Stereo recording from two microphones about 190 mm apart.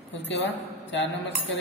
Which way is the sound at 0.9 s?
75° left (ahead or behind).